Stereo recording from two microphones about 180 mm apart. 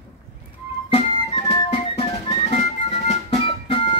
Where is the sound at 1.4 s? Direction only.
35° left (ahead or behind).